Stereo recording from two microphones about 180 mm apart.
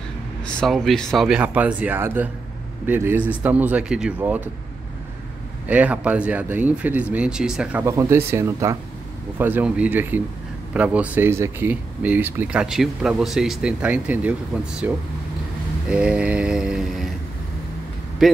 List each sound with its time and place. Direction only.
0.6 s speech: centre (ahead or behind)
5.7 s speech: 10° right (ahead or behind)
7.8 s speech: 15° right (ahead or behind)
15.9 s mantra: 5° right (ahead or behind)
18.2 s mantra: centre (ahead or behind)